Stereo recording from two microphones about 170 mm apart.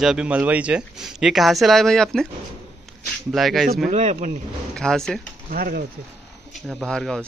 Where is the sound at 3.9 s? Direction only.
45° right (ahead or behind).